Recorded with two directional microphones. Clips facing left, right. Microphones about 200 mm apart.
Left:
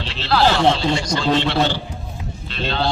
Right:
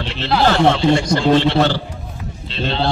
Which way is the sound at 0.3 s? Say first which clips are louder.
Right 2 dB; 20° right (ahead or behind).